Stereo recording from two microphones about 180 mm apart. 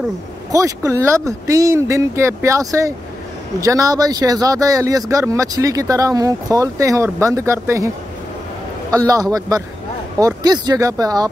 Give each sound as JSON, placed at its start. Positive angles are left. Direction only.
{"t": 0.5, "sound": "speech", "side_deg": -20}
{"t": 8.9, "sound": "speech", "side_deg": -20}